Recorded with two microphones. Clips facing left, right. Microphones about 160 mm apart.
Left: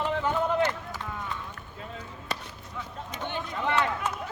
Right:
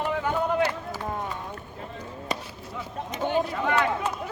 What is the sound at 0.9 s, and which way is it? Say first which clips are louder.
Clip-clop: right 6 dB; 40° right (ahead or behind).